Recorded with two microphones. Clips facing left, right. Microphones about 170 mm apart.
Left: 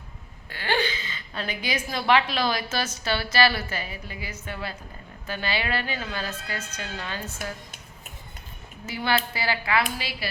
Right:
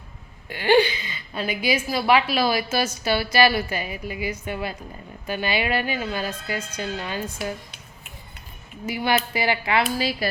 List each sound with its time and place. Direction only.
0.5 s a woman's voice: 15° right (ahead or behind)
8.9 s a woman's voice: 15° right (ahead or behind)
9.9 s speech: 40° right (ahead or behind)